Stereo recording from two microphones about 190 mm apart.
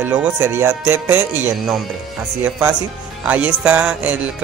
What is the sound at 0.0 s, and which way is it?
Speech, 10° right (ahead or behind).